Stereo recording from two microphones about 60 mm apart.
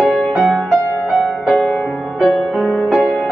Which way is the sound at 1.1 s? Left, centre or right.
Centre.